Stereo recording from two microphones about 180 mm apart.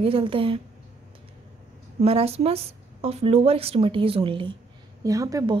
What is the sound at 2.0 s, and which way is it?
A woman's voice, 35° right (ahead or behind).